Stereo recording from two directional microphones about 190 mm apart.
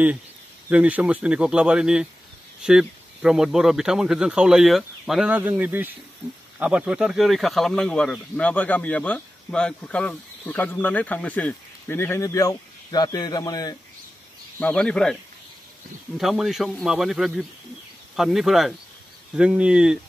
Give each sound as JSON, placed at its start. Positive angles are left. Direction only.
{"t": 0.7, "sound": "speech", "side_deg": -5}
{"t": 14.6, "sound": "speech", "side_deg": 5}
{"t": 16.2, "sound": "speech", "side_deg": 0}